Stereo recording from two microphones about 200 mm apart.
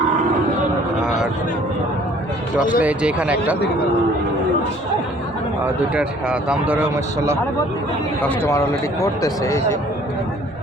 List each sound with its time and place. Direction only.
2.6 s speech: 45° left (ahead or behind)
2.8 s speech: 5° right (ahead or behind)
5.9 s speech: 5° right (ahead or behind)
8.2 s a man's voice: 10° left (ahead or behind)